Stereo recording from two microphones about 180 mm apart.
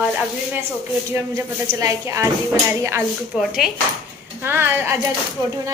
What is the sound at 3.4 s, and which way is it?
A woman's voice, centre (ahead or behind).